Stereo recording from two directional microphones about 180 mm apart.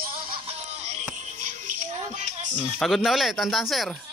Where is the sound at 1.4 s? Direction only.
45° right (ahead or behind).